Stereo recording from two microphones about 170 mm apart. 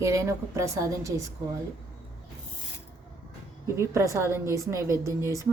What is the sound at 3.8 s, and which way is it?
Speech, 20° right (ahead or behind).